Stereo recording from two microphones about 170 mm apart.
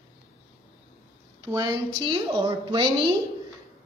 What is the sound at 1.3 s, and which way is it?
A woman's voice, 20° right (ahead or behind).